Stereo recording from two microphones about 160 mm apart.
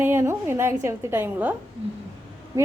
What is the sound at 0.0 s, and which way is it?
A woman's voice, 15° right (ahead or behind).